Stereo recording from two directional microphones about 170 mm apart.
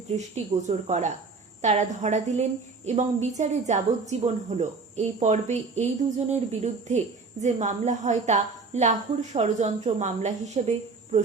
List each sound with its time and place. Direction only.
0.1 s a woman's voice: 40° right (ahead or behind)